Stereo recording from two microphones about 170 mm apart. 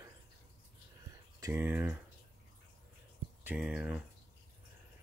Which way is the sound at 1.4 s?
15° right (ahead or behind).